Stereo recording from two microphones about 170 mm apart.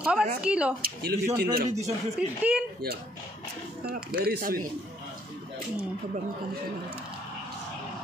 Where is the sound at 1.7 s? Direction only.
40° right (ahead or behind).